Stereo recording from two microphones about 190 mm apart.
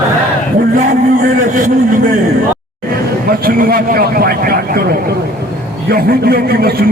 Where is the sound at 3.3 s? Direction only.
50° right (ahead or behind).